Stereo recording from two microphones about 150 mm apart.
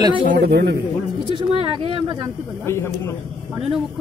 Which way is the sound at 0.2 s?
75° right (ahead or behind).